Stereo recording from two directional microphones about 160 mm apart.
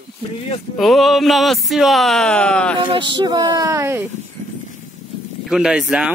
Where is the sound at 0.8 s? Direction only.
Centre (ahead or behind).